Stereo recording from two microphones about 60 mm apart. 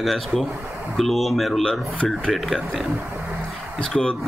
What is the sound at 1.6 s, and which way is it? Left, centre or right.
Speech, centre.